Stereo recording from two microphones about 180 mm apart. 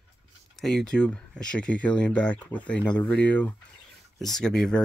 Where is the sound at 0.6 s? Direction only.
Centre (ahead or behind).